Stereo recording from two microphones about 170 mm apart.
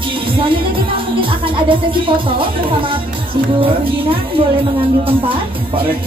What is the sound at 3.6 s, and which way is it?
Speech, 30° right (ahead or behind).